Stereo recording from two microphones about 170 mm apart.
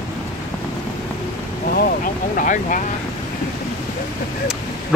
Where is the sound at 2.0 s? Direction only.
50° left (ahead or behind).